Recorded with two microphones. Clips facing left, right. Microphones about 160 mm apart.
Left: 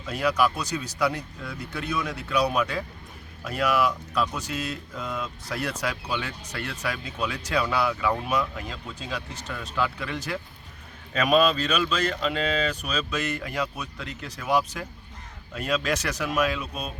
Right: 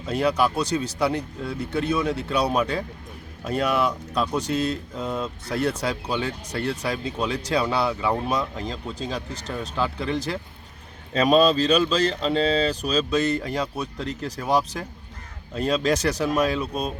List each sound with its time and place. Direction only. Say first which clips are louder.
0.0 s speech: right 2 dB; 30° right (ahead or behind)